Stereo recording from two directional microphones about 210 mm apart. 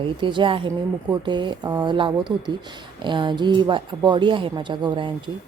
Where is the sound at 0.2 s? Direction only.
25° right (ahead or behind).